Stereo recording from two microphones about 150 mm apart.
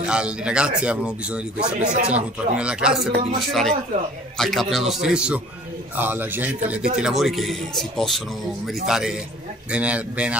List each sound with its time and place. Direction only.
0.0 s a man's voice: 5° right (ahead or behind)
1.9 s speech: 50° right (ahead or behind)
2.1 s a man's voice: 5° right (ahead or behind)